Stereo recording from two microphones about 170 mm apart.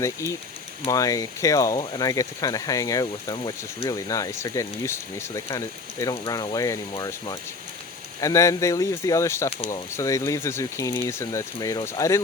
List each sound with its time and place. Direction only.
0.0 s speech: 15° left (ahead or behind)